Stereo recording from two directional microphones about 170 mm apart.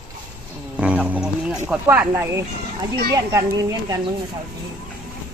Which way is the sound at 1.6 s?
10° right (ahead or behind).